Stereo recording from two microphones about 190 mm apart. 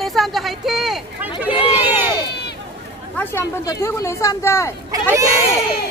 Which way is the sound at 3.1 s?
10° left (ahead or behind).